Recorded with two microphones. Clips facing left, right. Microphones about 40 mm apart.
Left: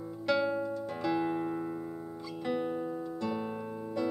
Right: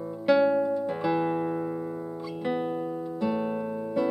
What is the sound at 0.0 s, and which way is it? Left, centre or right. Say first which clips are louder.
Music: right 8 dB; centre.